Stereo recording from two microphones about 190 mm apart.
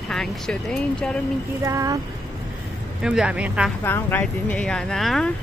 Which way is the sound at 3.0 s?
5° right (ahead or behind).